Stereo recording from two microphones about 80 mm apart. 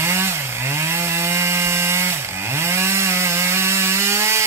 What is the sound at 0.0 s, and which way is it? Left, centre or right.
Chainsaw, right.